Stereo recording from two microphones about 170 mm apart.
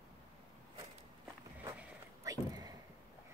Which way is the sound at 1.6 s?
15° right (ahead or behind).